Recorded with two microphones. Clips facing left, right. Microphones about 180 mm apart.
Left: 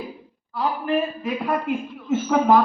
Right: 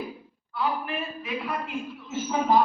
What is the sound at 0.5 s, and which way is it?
A man's voice, 40° left (ahead or behind).